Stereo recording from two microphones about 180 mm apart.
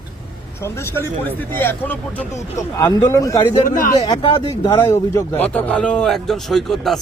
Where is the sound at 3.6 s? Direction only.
50° left (ahead or behind).